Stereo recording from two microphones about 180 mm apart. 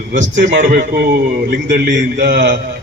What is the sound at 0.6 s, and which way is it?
A man's voice, 50° right (ahead or behind).